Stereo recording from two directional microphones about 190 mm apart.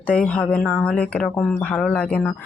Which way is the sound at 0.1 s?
5° left (ahead or behind).